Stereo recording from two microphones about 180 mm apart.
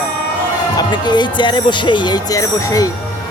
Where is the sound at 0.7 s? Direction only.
25° left (ahead or behind).